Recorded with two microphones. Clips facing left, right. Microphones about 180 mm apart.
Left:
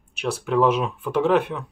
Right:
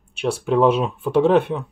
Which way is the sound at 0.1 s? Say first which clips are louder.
Right 3 dB; 30° right (ahead or behind).